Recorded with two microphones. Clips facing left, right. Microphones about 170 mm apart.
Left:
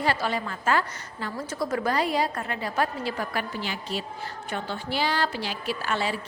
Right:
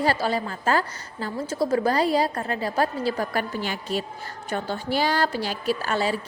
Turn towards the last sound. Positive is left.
turn(degrees=-40)  # may be behind; listen again after turning